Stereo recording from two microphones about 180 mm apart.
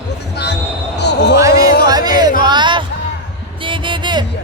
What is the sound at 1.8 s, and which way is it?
Music, 20° right (ahead or behind).